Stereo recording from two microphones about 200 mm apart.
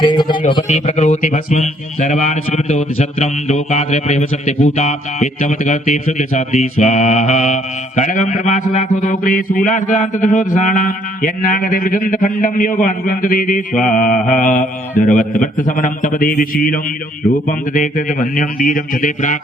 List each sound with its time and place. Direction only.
0.0 s a man's voice: 25° left (ahead or behind)
0.7 s a man's voice: 35° left (ahead or behind)